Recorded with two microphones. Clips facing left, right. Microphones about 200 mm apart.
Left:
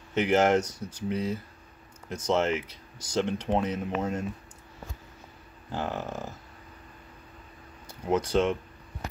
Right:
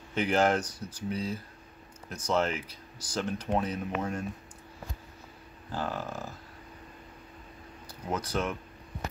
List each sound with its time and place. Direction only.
0.1 s speech: 20° left (ahead or behind)
5.7 s speech: 20° left (ahead or behind)
8.1 s speech: 25° left (ahead or behind)